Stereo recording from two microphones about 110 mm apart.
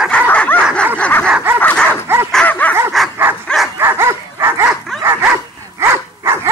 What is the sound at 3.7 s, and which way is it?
Dog, 20° right (ahead or behind).